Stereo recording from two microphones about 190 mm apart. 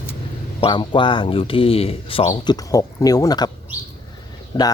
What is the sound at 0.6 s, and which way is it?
Speech, 25° left (ahead or behind).